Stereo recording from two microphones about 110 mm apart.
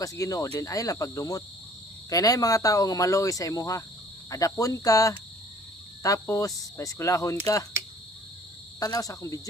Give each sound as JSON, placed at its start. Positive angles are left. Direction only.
{"t": 0.0, "sound": "speech", "side_deg": 30}
{"t": 8.8, "sound": "speech", "side_deg": 35}